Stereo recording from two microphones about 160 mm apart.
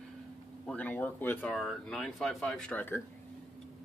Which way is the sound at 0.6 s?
10° left (ahead or behind).